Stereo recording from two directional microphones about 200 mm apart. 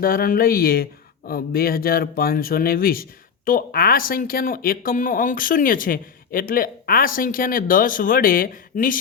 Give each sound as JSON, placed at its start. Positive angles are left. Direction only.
{"t": 0.0, "sound": "speech", "side_deg": 45}